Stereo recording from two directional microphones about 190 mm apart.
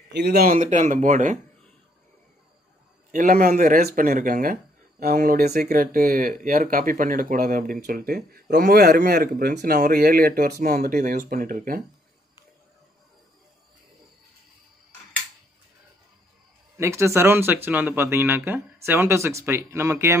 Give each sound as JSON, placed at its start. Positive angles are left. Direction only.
{"t": 0.1, "sound": "speech", "side_deg": -60}
{"t": 3.1, "sound": "speech", "side_deg": -45}
{"t": 16.7, "sound": "speech", "side_deg": -15}